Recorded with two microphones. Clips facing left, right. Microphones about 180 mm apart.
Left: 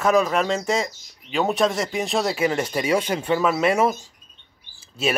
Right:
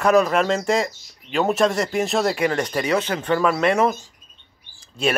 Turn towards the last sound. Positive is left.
turn(degrees=5)  # may be behind; listen again after turning